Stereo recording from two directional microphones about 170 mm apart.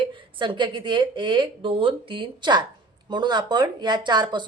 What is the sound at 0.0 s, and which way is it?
Speech, 30° right (ahead or behind).